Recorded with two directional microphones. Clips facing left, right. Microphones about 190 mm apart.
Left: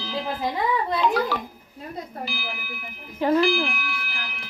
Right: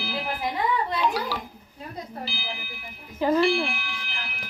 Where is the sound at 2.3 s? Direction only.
25° right (ahead or behind).